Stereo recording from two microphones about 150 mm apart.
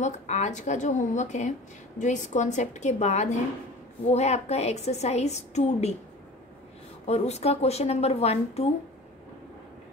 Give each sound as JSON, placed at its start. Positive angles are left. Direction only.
{"t": 0.0, "sound": "a woman's voice", "side_deg": 50}
{"t": 7.1, "sound": "a woman's voice", "side_deg": 45}